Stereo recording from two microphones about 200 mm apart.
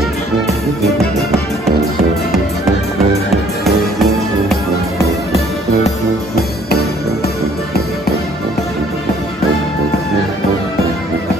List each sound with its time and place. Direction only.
3.6 s music: centre (ahead or behind)
6.3 s music: 50° left (ahead or behind)